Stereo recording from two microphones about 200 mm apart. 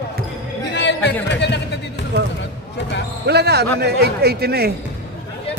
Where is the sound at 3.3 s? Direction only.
55° right (ahead or behind).